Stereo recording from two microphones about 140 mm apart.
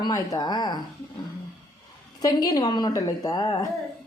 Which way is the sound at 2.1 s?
25° left (ahead or behind).